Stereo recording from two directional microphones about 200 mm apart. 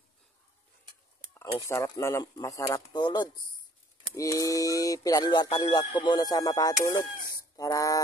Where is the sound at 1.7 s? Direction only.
15° left (ahead or behind).